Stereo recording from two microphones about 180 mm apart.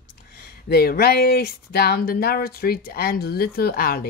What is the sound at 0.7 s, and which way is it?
Speech, 60° left (ahead or behind).